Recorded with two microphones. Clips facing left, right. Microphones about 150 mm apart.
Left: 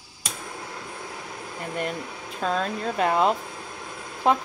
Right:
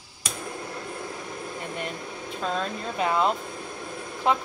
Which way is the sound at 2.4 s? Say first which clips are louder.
Left 3 dB; 45° left (ahead or behind).